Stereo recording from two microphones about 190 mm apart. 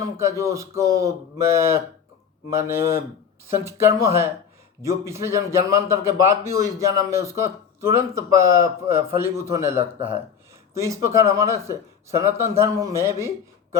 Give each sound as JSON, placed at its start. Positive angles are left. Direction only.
{"t": 0.0, "sound": "a man's voice", "side_deg": -15}